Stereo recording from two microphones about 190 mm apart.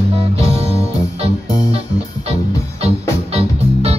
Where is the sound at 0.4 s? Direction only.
30° right (ahead or behind).